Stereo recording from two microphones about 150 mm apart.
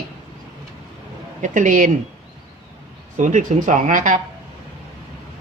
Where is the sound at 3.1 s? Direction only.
55° right (ahead or behind).